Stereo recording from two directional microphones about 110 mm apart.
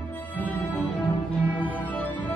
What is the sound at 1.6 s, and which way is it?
Music, 15° left (ahead or behind).